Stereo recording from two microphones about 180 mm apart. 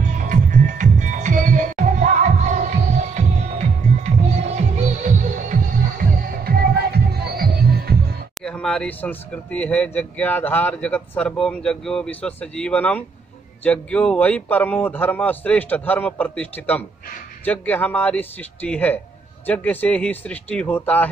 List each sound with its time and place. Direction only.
0.0 s music: 50° right (ahead or behind)
6.4 s music: 55° right (ahead or behind)
8.4 s speech: 5° left (ahead or behind)